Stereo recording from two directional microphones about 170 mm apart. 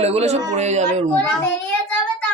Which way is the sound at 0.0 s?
40° right (ahead or behind).